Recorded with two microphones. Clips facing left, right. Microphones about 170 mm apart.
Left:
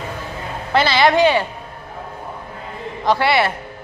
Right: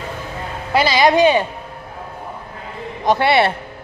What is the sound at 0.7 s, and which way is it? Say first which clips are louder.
Speech: right 1 dB; 10° right (ahead or behind).